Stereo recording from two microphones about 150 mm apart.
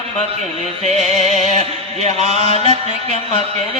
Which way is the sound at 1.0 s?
50° right (ahead or behind).